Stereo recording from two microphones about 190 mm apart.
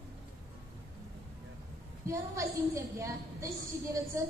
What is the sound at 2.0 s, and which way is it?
A woman's voice, 15° right (ahead or behind).